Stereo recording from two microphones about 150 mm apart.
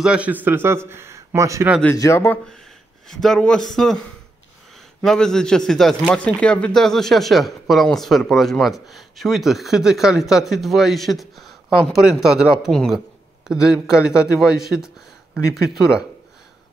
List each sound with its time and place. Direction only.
0.0 s a man's voice: 10° right (ahead or behind)
2.0 s speech: 20° left (ahead or behind)
3.1 s speech: centre (ahead or behind)
5.0 s speech: 5° left (ahead or behind)